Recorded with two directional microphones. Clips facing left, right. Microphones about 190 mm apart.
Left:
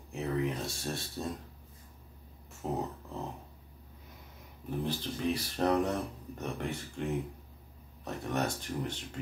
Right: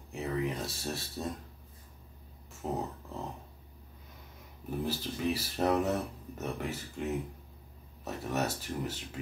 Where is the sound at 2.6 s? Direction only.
Centre (ahead or behind).